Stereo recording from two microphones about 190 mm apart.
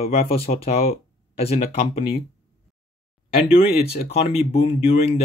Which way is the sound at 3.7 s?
55° left (ahead or behind).